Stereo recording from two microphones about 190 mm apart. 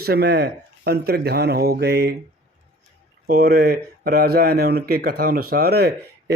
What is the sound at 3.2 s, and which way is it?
Speech, 55° right (ahead or behind).